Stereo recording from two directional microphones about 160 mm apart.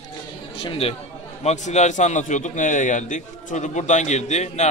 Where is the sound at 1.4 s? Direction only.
45° left (ahead or behind).